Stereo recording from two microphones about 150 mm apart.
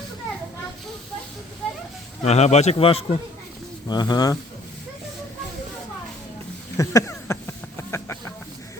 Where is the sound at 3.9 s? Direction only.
25° left (ahead or behind).